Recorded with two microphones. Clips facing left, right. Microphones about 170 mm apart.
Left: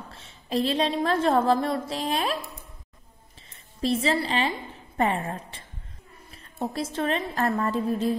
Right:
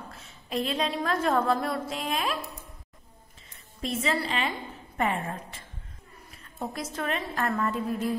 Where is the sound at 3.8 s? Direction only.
35° left (ahead or behind).